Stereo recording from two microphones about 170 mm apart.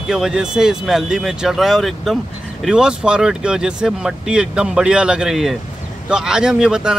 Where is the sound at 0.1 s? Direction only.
5° right (ahead or behind).